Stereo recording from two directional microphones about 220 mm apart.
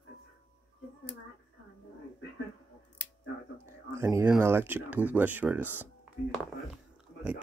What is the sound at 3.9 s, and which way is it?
Speech, 10° right (ahead or behind).